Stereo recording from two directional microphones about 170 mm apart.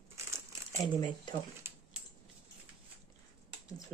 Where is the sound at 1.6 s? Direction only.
15° right (ahead or behind).